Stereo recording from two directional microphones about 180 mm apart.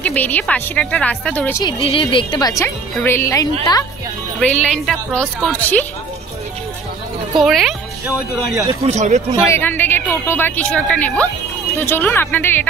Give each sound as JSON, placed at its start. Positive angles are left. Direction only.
{"t": 0.0, "sound": "a woman's voice", "side_deg": 10}
{"t": 1.6, "sound": "a woman's voice", "side_deg": 30}
{"t": 7.3, "sound": "a woman's voice", "side_deg": 0}
{"t": 8.8, "sound": "speech", "side_deg": -40}
{"t": 9.3, "sound": "a woman's voice", "side_deg": 15}